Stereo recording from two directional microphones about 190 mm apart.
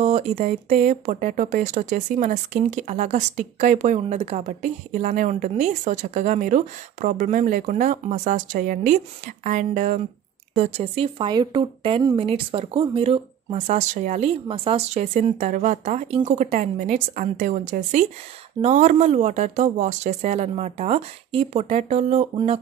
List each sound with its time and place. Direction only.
0.0 s speech: 35° right (ahead or behind)